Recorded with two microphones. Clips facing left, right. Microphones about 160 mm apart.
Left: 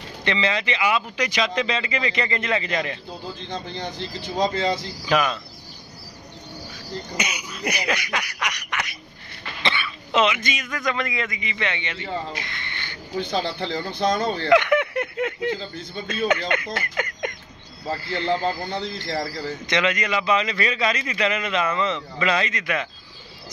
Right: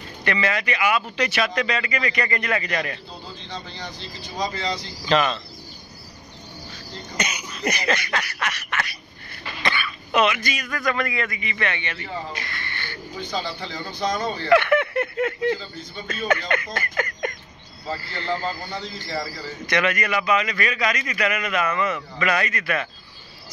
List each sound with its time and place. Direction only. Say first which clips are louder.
0.2 s speech: even; 20° left (ahead or behind)
3.4 s speech: left 4 dB; 50° left (ahead or behind)
5.0 s a sound: right 1 dB; 10° left (ahead or behind)
7.2 s a sound: right 5 dB; 10° left (ahead or behind)
9.6 s speech: even; 25° left (ahead or behind)
13.3 s speech: left 3 dB; 60° left (ahead or behind)
14.5 s a sound: right 1 dB; 15° left (ahead or behind)
16.1 s speech: left 1 dB; 20° left (ahead or behind)
18.8 s speech: left 3 dB; 55° left (ahead or behind)
19.6 s speech: right 1 dB; 20° left (ahead or behind)